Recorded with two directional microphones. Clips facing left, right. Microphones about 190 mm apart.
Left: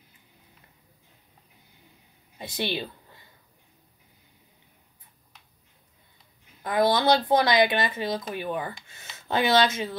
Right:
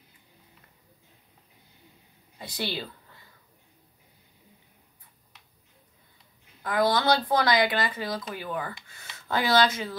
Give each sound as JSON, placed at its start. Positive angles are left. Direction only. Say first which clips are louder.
{"t": 2.3, "sound": "a woman's voice", "louder": "left 3 dB", "side_deg": 20}
{"t": 6.6, "sound": "speech", "louder": "left 2 dB", "side_deg": 20}